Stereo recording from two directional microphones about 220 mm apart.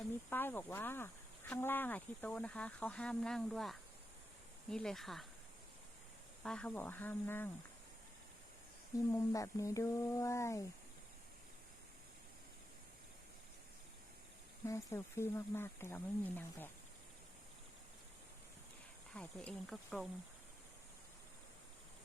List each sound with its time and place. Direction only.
0.3 s speech: 10° left (ahead or behind)
6.4 s speech: 5° left (ahead or behind)
9.1 s speech: 15° left (ahead or behind)
14.7 s speech: 15° left (ahead or behind)
19.1 s speech: 5° left (ahead or behind)